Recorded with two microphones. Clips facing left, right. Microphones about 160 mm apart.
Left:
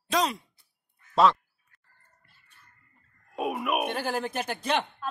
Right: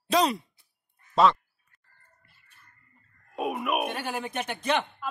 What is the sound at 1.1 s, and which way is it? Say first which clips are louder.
Quack: even; centre (ahead or behind).